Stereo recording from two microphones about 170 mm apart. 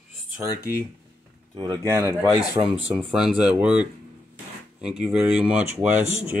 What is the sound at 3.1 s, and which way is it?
Speech, 5° right (ahead or behind).